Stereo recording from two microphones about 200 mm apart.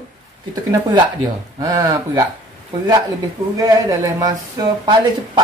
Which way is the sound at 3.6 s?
20° right (ahead or behind).